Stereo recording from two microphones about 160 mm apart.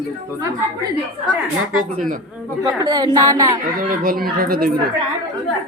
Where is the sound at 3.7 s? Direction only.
60° right (ahead or behind).